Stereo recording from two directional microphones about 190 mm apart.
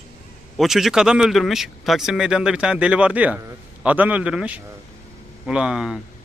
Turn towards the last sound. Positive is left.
turn(degrees=-5)  # may be behind; listen again after turning